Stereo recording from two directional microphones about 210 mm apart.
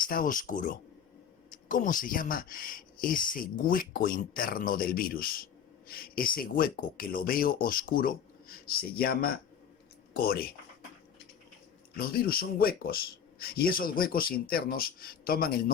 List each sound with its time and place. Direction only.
0.1 s speech: 40° left (ahead or behind)
11.9 s speech: 45° left (ahead or behind)